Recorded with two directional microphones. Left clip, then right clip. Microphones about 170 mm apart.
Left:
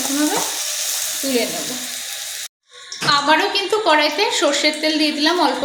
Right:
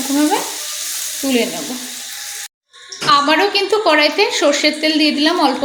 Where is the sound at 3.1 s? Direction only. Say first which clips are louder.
Right 3 dB; 30° right (ahead or behind).